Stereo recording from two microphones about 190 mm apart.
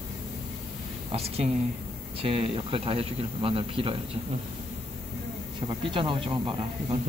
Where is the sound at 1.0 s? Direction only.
30° right (ahead or behind).